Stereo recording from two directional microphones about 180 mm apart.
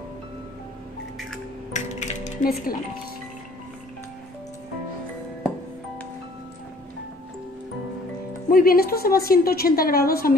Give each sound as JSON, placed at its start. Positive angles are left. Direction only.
{"t": 1.7, "sound": "music", "side_deg": 40}
{"t": 8.5, "sound": "a woman's voice", "side_deg": 55}